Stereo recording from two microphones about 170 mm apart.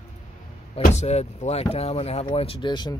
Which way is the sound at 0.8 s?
40° left (ahead or behind).